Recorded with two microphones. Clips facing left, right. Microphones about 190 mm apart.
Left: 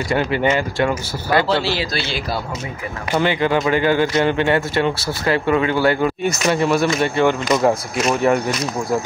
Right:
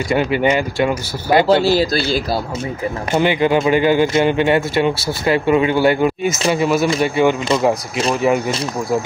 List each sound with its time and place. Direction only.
0.1 s speech: 15° right (ahead or behind)
1.5 s a man's voice: 45° right (ahead or behind)
3.1 s speech: 15° right (ahead or behind)
6.5 s speech: 5° right (ahead or behind)